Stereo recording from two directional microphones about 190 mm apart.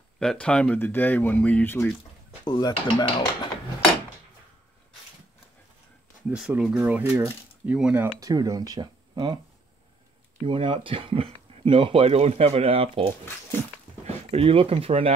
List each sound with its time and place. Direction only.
0.2 s speech: 5° left (ahead or behind)
2.4 s speech: 25° left (ahead or behind)
6.2 s speech: 5° right (ahead or behind)
8.2 s speech: 20° right (ahead or behind)
10.4 s speech: 25° right (ahead or behind)